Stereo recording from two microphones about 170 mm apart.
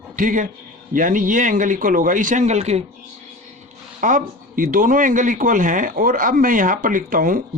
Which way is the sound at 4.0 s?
50° right (ahead or behind).